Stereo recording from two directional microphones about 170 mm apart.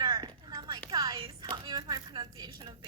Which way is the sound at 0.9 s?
25° right (ahead or behind).